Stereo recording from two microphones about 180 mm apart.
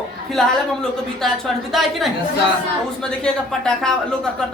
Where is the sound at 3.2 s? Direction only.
5° left (ahead or behind).